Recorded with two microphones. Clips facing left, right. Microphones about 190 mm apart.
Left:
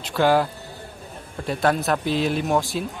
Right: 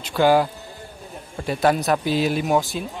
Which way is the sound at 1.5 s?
5° right (ahead or behind).